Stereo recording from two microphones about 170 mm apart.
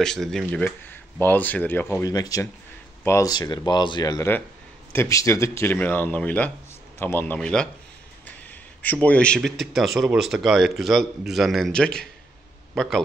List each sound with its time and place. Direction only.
0.0 s speech: 5° left (ahead or behind)
8.8 s speech: 10° left (ahead or behind)